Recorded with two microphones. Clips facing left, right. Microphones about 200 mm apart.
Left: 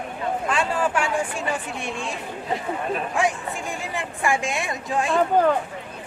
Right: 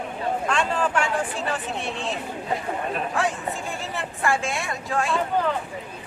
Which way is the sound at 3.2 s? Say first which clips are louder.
Left 3 dB; 15° left (ahead or behind).